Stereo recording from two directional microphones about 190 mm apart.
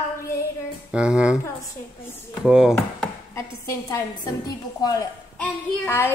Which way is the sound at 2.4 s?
5° right (ahead or behind).